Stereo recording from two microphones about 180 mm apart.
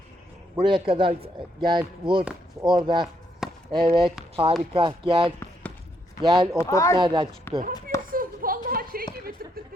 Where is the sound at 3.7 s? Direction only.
30° right (ahead or behind).